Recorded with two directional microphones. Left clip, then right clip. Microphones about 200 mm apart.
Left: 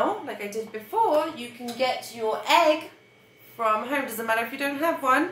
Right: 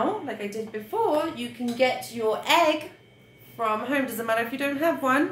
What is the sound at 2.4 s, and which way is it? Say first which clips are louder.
Speech: left 1 dB; 40° right (ahead or behind).